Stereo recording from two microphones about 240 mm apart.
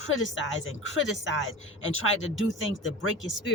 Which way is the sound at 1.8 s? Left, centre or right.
Left.